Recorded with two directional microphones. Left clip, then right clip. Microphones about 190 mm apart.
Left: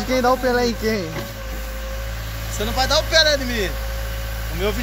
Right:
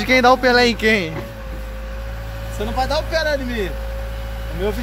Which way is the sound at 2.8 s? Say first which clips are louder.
Left 4 dB; 25° right (ahead or behind).